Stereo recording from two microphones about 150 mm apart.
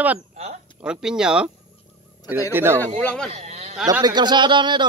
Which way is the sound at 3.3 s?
45° right (ahead or behind).